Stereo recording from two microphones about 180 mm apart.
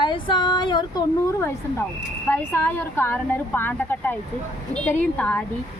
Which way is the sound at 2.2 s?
10° left (ahead or behind).